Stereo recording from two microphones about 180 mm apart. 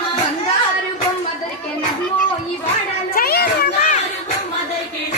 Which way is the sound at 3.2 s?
60° left (ahead or behind).